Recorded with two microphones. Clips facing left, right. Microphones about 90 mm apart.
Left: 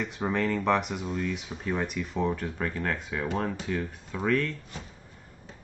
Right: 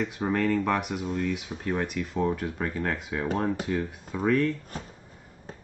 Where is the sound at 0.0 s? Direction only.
5° right (ahead or behind).